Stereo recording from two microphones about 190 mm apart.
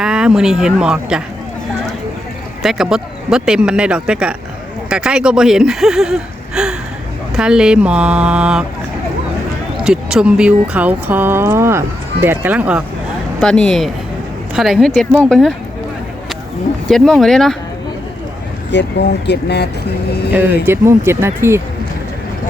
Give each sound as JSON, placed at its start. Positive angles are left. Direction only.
{"t": 0.0, "sound": "speech", "side_deg": -5}
{"t": 2.6, "sound": "speech", "side_deg": -5}
{"t": 9.8, "sound": "speech", "side_deg": -5}
{"t": 13.4, "sound": "speech", "side_deg": 5}
{"t": 16.9, "sound": "speech", "side_deg": 0}
{"t": 18.7, "sound": "speech", "side_deg": 65}
{"t": 20.3, "sound": "speech", "side_deg": -10}